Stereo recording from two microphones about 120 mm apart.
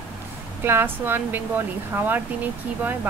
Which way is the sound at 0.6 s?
20° right (ahead or behind).